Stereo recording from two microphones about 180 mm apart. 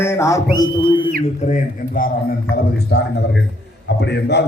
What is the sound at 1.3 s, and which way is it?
A man's voice, 40° left (ahead or behind).